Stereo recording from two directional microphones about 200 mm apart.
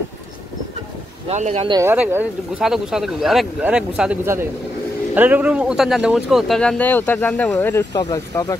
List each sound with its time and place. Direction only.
1.3 s speech: 35° right (ahead or behind)
1.7 s speech: 15° right (ahead or behind); by 8.5 s 15° left (ahead or behind)